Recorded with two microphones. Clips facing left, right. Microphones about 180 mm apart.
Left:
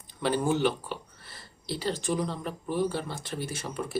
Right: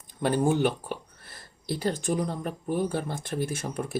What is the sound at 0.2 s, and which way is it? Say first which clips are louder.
Speech: right 2 dB; 50° right (ahead or behind).